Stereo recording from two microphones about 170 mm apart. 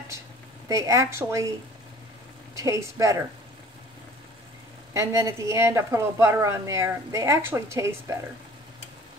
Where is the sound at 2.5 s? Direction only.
20° right (ahead or behind).